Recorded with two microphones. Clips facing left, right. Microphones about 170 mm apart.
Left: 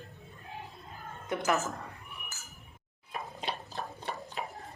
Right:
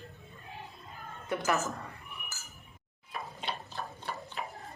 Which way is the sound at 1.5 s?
Centre (ahead or behind).